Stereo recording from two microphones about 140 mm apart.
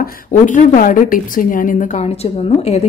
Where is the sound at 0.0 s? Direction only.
70° left (ahead or behind).